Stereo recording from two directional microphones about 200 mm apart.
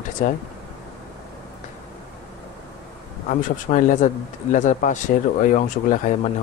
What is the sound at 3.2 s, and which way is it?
Speech, 40° left (ahead or behind).